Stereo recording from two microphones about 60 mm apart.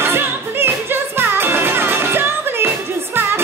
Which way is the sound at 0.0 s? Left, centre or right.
Right.